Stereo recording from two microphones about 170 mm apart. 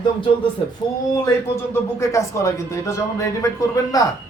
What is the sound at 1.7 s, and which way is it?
A man's voice, 15° left (ahead or behind).